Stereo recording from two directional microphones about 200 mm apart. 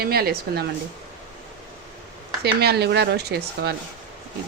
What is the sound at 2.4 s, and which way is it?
Speech, 55° right (ahead or behind).